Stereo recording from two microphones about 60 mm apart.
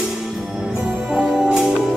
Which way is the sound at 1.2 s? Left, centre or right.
Centre.